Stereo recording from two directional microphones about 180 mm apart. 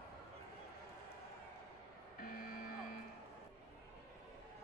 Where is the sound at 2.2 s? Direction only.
50° left (ahead or behind).